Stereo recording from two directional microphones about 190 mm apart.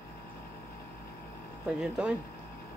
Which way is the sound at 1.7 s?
5° right (ahead or behind).